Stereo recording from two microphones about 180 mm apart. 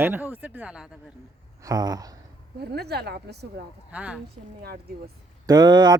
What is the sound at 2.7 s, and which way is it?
Speech, 65° right (ahead or behind).